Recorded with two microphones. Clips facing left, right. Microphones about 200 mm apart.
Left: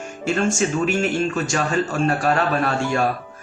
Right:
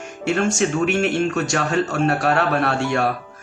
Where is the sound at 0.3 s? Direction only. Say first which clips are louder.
Right 1 dB; 65° right (ahead or behind).